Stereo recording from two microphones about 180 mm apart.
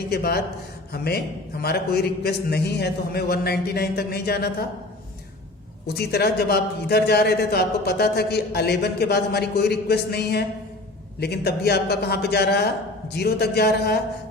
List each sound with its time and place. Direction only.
0.1 s a man's voice: 65° left (ahead or behind)
5.9 s a man's voice: 65° left (ahead or behind)